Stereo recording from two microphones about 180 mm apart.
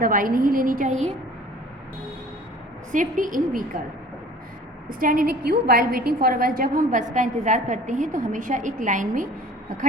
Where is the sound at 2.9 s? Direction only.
45° right (ahead or behind).